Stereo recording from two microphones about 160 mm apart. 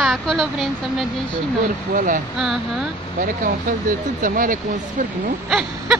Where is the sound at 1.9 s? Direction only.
55° right (ahead or behind).